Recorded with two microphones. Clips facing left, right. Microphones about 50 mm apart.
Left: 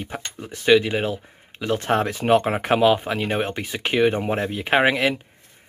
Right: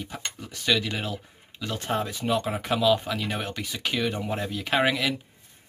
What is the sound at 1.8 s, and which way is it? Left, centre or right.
Speech, left.